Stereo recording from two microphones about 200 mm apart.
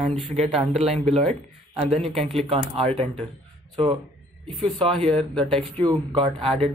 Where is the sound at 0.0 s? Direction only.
30° right (ahead or behind).